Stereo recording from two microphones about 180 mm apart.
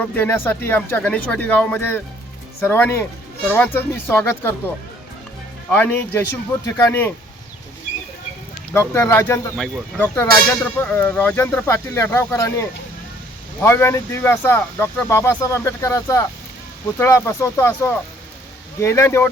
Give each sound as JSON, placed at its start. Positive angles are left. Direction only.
{"t": 0.1, "sound": "speech", "side_deg": 10}
{"t": 5.7, "sound": "speech", "side_deg": 10}
{"t": 8.7, "sound": "speech", "side_deg": 15}